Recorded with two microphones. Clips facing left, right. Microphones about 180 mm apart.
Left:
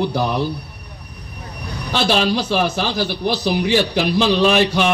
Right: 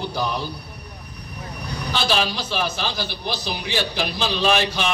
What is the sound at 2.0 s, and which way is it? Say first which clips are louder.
A man's voice: left 6 dB; 65° left (ahead or behind).